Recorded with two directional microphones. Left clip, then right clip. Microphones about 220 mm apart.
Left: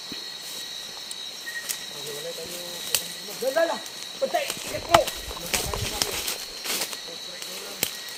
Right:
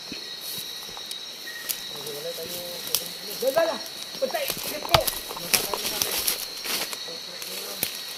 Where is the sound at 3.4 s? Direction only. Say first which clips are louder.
Right 2 dB; 40° left (ahead or behind).